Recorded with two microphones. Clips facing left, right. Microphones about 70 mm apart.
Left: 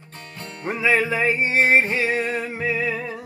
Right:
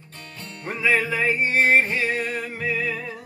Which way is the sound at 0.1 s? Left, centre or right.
Left.